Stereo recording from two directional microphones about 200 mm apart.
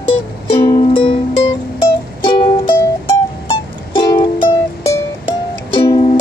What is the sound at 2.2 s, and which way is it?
Music, 25° left (ahead or behind).